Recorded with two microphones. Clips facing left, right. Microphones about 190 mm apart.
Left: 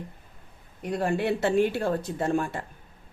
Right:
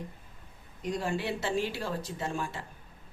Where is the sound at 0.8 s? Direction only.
60° left (ahead or behind).